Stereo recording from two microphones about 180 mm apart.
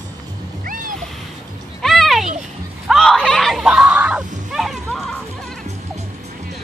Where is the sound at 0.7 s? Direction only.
50° right (ahead or behind).